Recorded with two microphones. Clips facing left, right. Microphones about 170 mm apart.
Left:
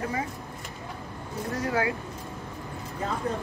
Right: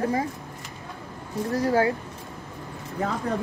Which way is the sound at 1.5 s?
35° right (ahead or behind).